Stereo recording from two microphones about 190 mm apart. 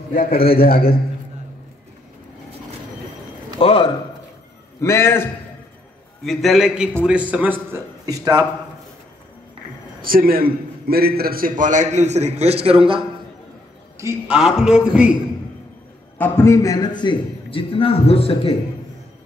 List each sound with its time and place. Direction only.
0.1 s a man's voice: 50° left (ahead or behind)
3.5 s a man's voice: 30° left (ahead or behind)
4.8 s a man's voice: 15° left (ahead or behind)
6.2 s a man's voice: centre (ahead or behind); by 8.5 s 20° right (ahead or behind)
10.0 s a man's voice: 50° right (ahead or behind); by 13.0 s 30° right (ahead or behind)
13.9 s a man's voice: 10° right (ahead or behind)
16.2 s a man's voice: 15° left (ahead or behind); by 18.5 s 30° left (ahead or behind)